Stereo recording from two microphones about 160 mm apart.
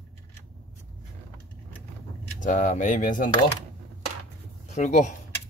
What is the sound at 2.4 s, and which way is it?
Speech, 50° left (ahead or behind).